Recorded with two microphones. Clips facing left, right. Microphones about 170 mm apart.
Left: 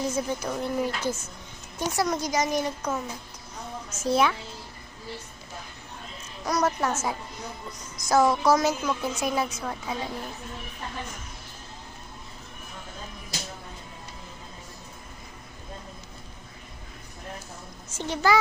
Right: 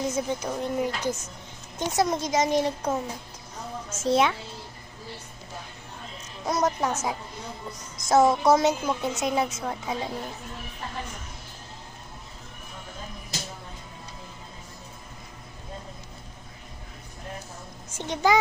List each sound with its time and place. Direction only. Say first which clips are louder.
0.1 s a woman's voice: even; 20° right (ahead or behind)
4.0 s a woman's voice: right 1 dB; 25° right (ahead or behind)
6.4 s a woman's voice: even; 25° right (ahead or behind)
17.9 s a child's voice: right 1 dB; 15° right (ahead or behind)